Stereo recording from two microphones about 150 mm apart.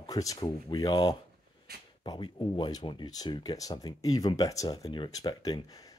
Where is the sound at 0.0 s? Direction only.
25° left (ahead or behind).